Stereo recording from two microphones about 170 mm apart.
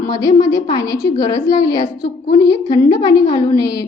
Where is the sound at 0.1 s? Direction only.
20° left (ahead or behind).